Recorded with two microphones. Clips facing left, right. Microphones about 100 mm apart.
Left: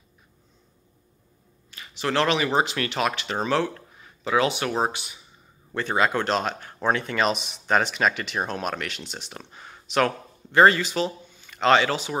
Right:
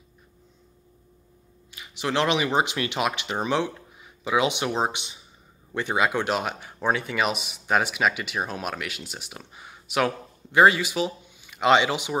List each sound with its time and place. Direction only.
1.7 s speech: 10° right (ahead or behind)